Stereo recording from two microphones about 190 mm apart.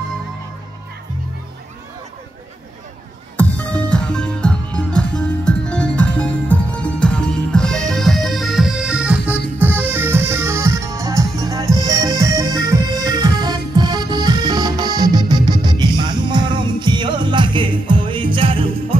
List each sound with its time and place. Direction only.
3.3 s music: 10° left (ahead or behind); by 18.9 s 30° right (ahead or behind)